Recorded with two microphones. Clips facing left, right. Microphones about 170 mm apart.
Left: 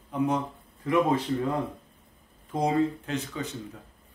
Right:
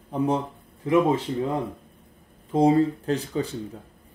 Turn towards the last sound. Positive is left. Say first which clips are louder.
# right 6 dB
turn(degrees=-35)  # may be behind; listen again after turning